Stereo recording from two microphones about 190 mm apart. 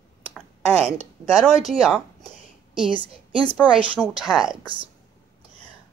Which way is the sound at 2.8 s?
25° right (ahead or behind).